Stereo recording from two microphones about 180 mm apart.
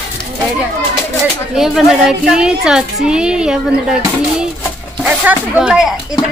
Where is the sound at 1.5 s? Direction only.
Centre (ahead or behind).